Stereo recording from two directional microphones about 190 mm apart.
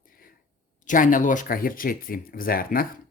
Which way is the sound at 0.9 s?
45° left (ahead or behind).